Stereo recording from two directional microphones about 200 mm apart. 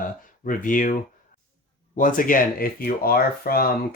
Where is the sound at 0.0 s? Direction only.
45° left (ahead or behind).